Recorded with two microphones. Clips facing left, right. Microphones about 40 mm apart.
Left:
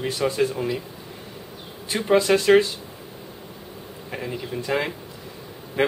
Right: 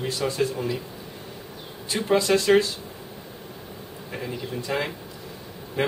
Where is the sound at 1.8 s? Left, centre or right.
Centre.